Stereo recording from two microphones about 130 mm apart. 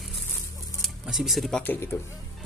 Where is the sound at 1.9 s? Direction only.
15° left (ahead or behind).